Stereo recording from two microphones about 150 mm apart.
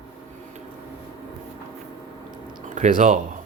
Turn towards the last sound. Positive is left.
turn(degrees=-60)  # may be behind; listen again after turning